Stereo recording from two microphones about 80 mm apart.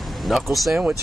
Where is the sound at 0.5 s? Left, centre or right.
Centre.